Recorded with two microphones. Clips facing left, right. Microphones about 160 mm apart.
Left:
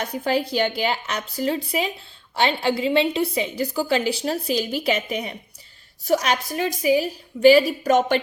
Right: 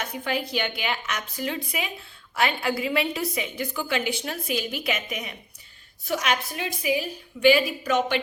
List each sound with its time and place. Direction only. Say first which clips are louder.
0.0 s a woman's voice: left 6 dB; 35° left (ahead or behind)